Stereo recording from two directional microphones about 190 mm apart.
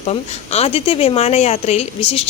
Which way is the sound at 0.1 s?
30° left (ahead or behind).